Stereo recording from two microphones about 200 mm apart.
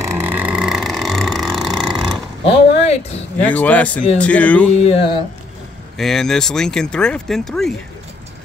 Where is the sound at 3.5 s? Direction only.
5° left (ahead or behind).